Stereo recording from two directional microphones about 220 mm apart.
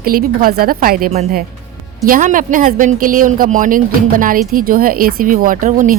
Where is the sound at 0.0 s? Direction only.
40° right (ahead or behind).